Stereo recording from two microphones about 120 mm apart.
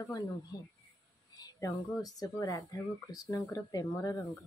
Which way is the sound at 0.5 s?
30° left (ahead or behind).